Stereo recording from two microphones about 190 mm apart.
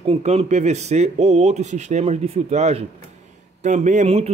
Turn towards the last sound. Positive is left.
turn(degrees=-35)  # may be behind; listen again after turning